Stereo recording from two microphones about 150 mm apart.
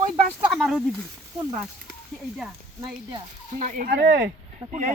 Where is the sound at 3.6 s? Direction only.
75° right (ahead or behind).